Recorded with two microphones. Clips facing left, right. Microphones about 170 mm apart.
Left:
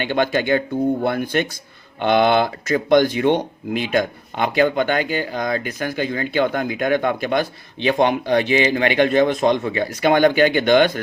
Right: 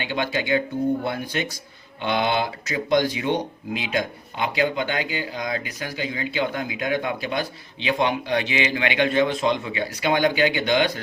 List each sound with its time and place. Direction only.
0.0 s speech: 50° left (ahead or behind)